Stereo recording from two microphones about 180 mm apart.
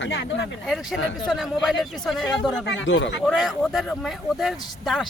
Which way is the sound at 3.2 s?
Centre (ahead or behind).